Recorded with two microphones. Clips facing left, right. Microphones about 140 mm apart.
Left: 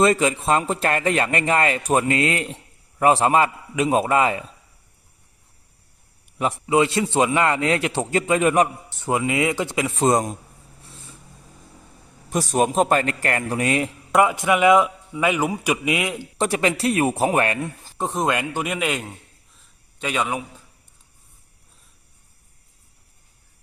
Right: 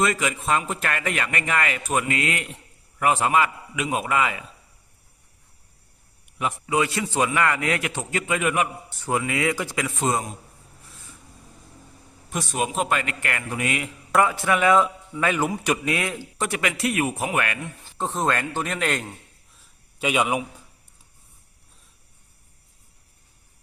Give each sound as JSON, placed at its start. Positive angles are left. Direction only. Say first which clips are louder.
{"t": 0.0, "sound": "a man's voice", "louder": "left 6 dB", "side_deg": 30}
{"t": 6.4, "sound": "a man's voice", "louder": "left 5 dB", "side_deg": 25}
{"t": 8.9, "sound": "a man's voice", "louder": "left 3 dB", "side_deg": 20}
{"t": 10.0, "sound": "a man's voice", "louder": "left 7 dB", "side_deg": 40}
{"t": 10.8, "sound": "a sound", "louder": "left 5 dB", "side_deg": 30}
{"t": 12.3, "sound": "a man's voice", "louder": "left 6 dB", "side_deg": 40}
{"t": 14.2, "sound": "a man's voice", "louder": "left 3 dB", "side_deg": 15}
{"t": 16.4, "sound": "a man's voice", "louder": "left 5 dB", "side_deg": 30}
{"t": 17.9, "sound": "a man's voice", "louder": "left 2 dB", "side_deg": 15}
{"t": 19.5, "sound": "a sound", "louder": "right 3 dB", "side_deg": -10}